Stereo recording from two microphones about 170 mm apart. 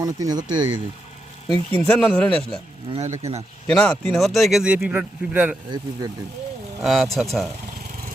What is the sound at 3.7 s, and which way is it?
Speech, 5° left (ahead or behind).